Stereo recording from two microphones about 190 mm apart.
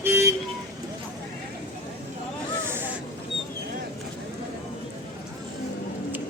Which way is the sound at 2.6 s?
10° right (ahead or behind).